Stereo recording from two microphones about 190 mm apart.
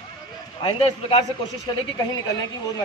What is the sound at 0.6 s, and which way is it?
A woman's voice, 30° left (ahead or behind).